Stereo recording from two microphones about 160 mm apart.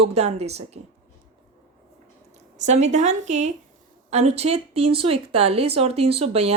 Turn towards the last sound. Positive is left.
turn(degrees=-40)  # may be behind; listen again after turning